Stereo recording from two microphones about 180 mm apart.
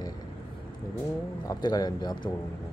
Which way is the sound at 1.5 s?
20° left (ahead or behind).